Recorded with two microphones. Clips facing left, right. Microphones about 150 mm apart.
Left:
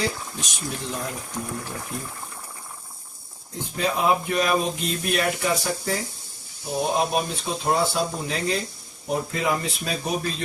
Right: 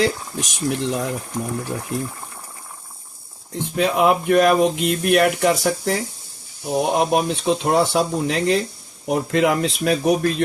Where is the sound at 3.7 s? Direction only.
70° right (ahead or behind).